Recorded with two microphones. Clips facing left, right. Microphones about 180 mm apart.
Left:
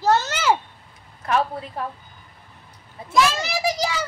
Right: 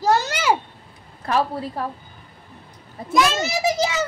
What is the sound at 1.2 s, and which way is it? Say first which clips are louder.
Speech: right 1 dB; 35° right (ahead or behind).